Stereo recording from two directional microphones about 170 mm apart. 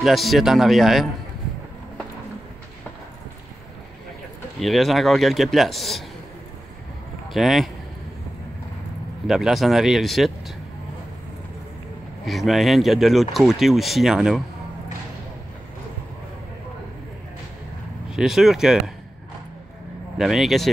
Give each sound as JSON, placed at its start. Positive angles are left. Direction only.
{"t": 0.0, "sound": "speech", "side_deg": 0}
{"t": 4.6, "sound": "speech", "side_deg": 0}
{"t": 7.2, "sound": "speech", "side_deg": 0}
{"t": 9.3, "sound": "speech", "side_deg": 0}
{"t": 12.3, "sound": "speech", "side_deg": 0}
{"t": 18.1, "sound": "speech", "side_deg": 0}
{"t": 20.2, "sound": "speech", "side_deg": 0}